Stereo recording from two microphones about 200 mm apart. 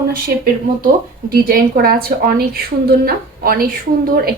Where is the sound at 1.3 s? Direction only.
45° right (ahead or behind).